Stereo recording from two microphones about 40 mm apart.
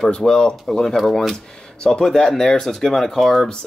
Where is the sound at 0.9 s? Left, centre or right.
Centre.